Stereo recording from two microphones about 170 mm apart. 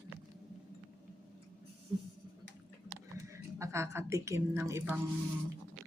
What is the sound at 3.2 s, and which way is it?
A woman's voice, 15° right (ahead or behind).